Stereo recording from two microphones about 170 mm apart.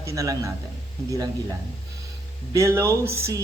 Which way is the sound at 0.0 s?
20° right (ahead or behind).